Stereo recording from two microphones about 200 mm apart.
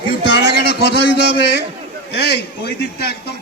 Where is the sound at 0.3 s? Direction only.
60° left (ahead or behind).